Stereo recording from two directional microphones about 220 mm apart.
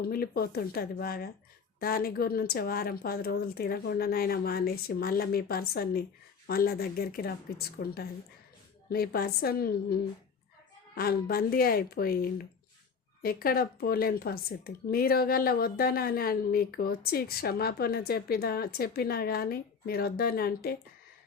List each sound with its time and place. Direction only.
0.0 s speech: 45° left (ahead or behind)